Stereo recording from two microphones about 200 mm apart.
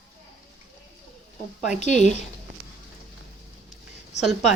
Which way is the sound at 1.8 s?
35° left (ahead or behind).